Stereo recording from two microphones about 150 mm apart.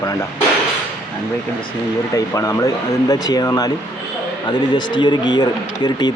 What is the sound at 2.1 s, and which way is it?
Speech, 20° left (ahead or behind).